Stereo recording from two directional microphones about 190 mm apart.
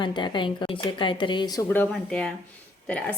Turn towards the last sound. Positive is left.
turn(degrees=5)  # may be behind; listen again after turning